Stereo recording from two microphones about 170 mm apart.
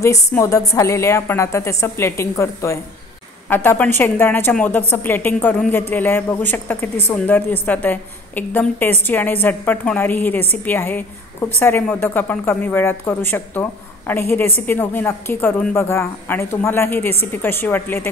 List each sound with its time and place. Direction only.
0.0 s a woman's voice: 15° left (ahead or behind)